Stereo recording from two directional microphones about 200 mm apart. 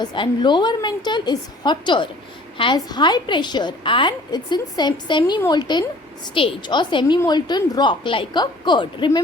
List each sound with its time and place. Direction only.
0.0 s a woman's voice: 20° left (ahead or behind)